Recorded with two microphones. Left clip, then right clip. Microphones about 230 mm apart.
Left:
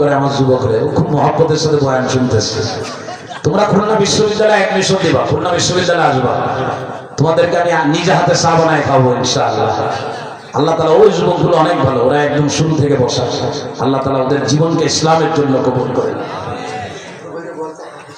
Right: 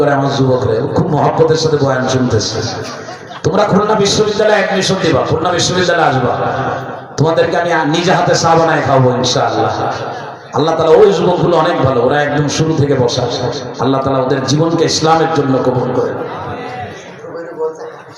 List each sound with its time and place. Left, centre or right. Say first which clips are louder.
0.0 s a man's voice: even; right
7.2 s a man's voice: even; right